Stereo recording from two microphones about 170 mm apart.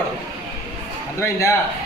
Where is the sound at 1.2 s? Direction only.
15° left (ahead or behind).